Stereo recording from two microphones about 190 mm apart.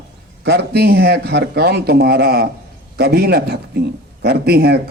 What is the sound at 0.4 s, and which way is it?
A man's voice, 60° right (ahead or behind).